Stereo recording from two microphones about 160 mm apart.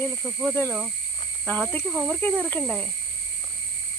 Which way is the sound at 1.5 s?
10° left (ahead or behind).